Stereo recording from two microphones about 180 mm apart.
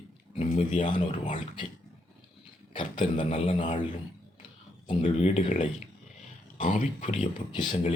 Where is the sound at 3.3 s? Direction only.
40° left (ahead or behind).